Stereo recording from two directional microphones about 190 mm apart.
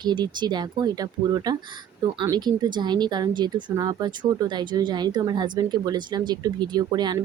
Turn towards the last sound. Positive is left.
turn(degrees=-20)  # may be behind; listen again after turning